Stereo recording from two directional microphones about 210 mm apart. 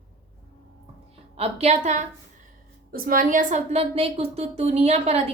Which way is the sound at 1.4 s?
30° right (ahead or behind).